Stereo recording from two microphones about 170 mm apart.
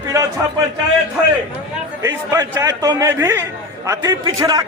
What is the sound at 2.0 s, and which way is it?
A man's voice, 20° right (ahead or behind).